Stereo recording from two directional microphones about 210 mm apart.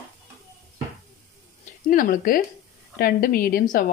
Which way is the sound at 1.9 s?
45° left (ahead or behind).